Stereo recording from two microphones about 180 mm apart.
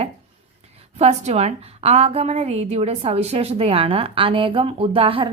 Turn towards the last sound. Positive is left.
turn(degrees=-30)  # may be behind; listen again after turning